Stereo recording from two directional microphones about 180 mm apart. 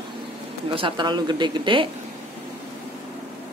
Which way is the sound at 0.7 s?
25° right (ahead or behind).